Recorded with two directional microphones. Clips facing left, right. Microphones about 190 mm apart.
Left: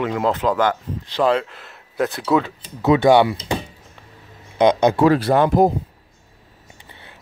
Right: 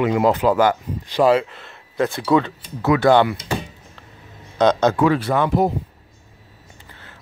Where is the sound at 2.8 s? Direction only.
20° left (ahead or behind).